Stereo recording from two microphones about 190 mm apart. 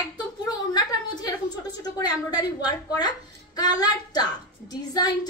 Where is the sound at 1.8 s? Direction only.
20° left (ahead or behind).